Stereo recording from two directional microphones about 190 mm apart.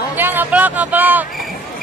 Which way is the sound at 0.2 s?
10° right (ahead or behind).